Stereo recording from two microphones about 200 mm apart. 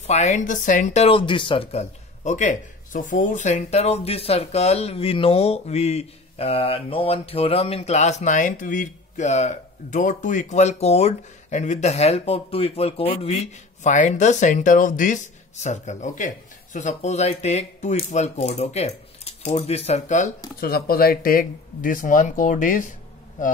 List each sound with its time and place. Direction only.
0.0 s speech: 35° left (ahead or behind)